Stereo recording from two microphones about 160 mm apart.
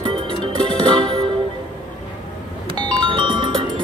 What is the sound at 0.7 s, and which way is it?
Music, 30° right (ahead or behind).